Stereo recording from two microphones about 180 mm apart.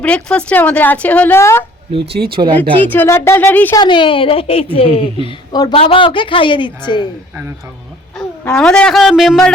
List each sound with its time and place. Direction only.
0.0 s a woman's voice: 5° left (ahead or behind)
2.3 s speech: 30° right (ahead or behind)
2.8 s a woman's voice: 10° left (ahead or behind)
3.8 s a woman's voice: 25° left (ahead or behind)
8.4 s speech: 5° left (ahead or behind)